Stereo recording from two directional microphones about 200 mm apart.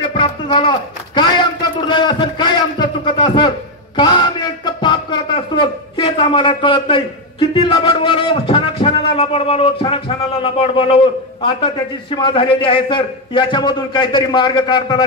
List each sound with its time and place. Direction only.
0.1 s a man's voice: 25° left (ahead or behind)